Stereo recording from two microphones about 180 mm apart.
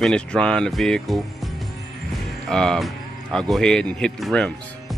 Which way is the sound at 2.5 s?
Centre (ahead or behind).